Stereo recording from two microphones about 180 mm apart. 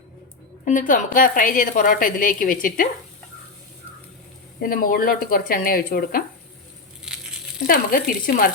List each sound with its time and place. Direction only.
0.6 s a woman's voice: 45° left (ahead or behind)
4.6 s a woman's voice: 55° left (ahead or behind)
7.0 s crushing: 5° right (ahead or behind)
7.7 s a woman's voice: 55° left (ahead or behind)